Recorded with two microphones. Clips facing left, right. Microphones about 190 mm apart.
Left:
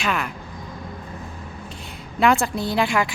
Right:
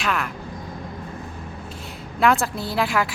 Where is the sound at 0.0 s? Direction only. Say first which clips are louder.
Even; centre (ahead or behind).